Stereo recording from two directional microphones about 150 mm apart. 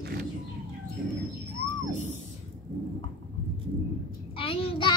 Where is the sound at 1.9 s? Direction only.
50° left (ahead or behind).